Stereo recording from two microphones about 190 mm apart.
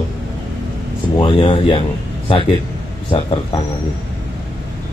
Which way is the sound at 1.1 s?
25° left (ahead or behind).